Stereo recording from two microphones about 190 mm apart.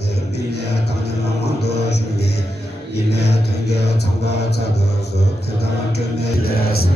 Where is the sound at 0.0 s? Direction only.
60° left (ahead or behind).